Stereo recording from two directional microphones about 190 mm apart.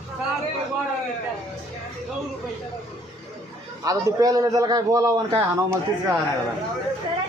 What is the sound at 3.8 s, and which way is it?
A man's voice, 20° right (ahead or behind).